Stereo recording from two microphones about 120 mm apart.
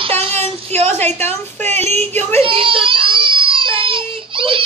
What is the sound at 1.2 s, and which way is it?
Speech, 20° left (ahead or behind).